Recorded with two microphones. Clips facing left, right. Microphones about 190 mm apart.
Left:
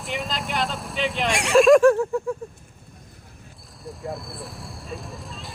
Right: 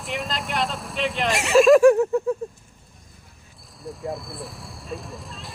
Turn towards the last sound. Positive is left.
turn(degrees=0)  # may be behind; listen again after turning